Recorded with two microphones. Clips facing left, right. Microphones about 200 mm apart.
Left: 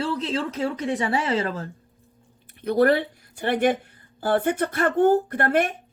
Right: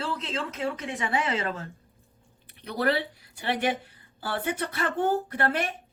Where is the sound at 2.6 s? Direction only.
50° left (ahead or behind).